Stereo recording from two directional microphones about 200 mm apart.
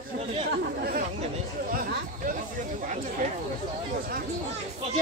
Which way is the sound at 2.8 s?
40° right (ahead or behind).